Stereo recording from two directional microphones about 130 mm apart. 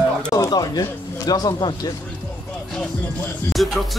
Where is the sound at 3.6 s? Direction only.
Centre (ahead or behind).